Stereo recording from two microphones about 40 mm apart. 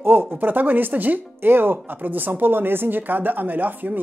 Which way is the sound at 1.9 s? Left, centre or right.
Right.